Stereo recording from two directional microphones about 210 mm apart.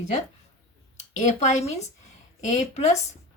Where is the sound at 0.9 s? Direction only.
35° left (ahead or behind).